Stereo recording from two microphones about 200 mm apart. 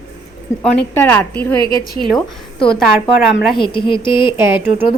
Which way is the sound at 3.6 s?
25° left (ahead or behind).